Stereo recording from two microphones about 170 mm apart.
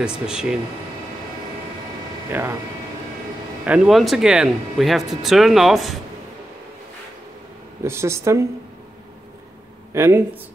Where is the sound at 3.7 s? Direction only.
Centre (ahead or behind).